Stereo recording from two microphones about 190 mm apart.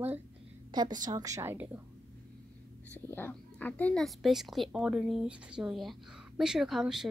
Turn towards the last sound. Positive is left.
turn(degrees=0)  # may be behind; listen again after turning